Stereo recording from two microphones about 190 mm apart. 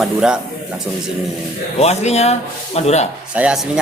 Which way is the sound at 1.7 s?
35° left (ahead or behind).